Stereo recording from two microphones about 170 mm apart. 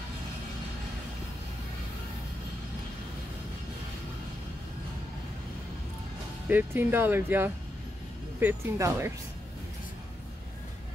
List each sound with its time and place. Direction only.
6.5 s speech: 10° right (ahead or behind)